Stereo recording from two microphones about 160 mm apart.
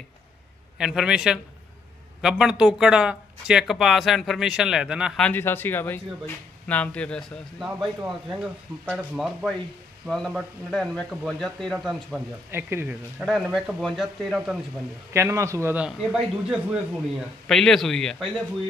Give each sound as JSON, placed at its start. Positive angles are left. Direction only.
{"t": 0.7, "sound": "speech", "side_deg": -5}
{"t": 5.2, "sound": "speech", "side_deg": 10}
{"t": 8.0, "sound": "speech", "side_deg": -5}
{"t": 12.4, "sound": "a man's voice", "side_deg": -15}
{"t": 13.2, "sound": "speech", "side_deg": 0}
{"t": 15.1, "sound": "a man's voice", "side_deg": -20}